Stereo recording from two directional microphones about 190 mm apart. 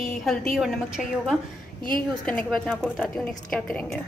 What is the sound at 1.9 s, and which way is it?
A woman's voice, 5° left (ahead or behind).